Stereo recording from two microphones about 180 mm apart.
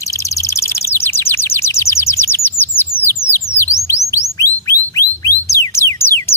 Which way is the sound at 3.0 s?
15° left (ahead or behind).